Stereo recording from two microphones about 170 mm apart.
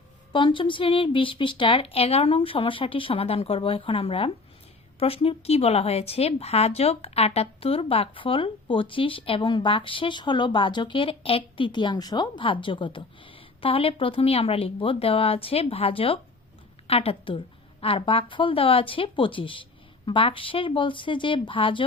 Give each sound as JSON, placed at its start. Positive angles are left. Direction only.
{"t": 0.3, "sound": "speech", "side_deg": 30}